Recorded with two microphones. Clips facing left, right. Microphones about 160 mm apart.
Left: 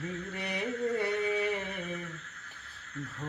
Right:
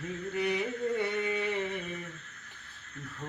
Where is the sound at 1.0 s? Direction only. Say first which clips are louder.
Left 1 dB; 10° left (ahead or behind).